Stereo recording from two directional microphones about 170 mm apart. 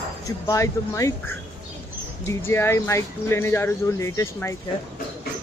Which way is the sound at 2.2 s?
15° left (ahead or behind).